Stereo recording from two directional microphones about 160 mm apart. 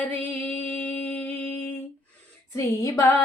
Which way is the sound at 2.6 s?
20° left (ahead or behind).